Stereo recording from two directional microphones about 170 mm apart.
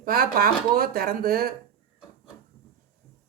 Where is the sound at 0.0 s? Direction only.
60° right (ahead or behind).